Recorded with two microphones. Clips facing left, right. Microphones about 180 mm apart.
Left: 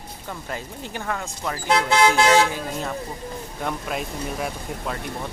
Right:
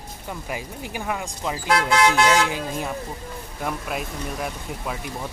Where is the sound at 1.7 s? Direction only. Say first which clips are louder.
Left 1 dB; 30° left (ahead or behind).